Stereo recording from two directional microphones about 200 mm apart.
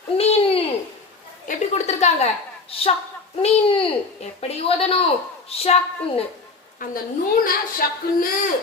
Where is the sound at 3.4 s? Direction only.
25° left (ahead or behind).